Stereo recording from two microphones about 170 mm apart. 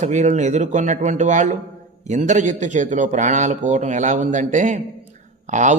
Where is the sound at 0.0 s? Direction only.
45° right (ahead or behind).